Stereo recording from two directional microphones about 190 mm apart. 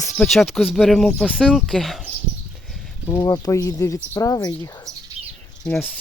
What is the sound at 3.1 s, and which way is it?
Speech, 15° left (ahead or behind).